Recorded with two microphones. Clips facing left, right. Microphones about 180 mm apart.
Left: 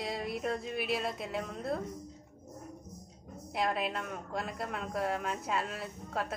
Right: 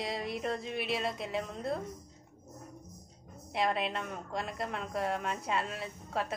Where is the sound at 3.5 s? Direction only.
Centre (ahead or behind).